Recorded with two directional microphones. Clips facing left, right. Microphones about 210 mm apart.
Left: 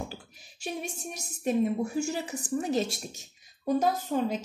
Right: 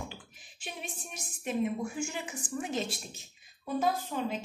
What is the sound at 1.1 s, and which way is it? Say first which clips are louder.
A woman's voice: left 6 dB; 40° left (ahead or behind).